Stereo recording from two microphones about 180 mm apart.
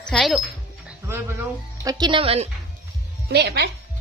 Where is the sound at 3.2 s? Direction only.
70° right (ahead or behind).